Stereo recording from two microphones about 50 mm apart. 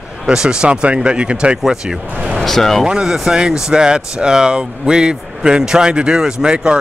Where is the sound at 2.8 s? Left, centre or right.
Centre.